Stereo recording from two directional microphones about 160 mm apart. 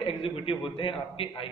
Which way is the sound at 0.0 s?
35° left (ahead or behind).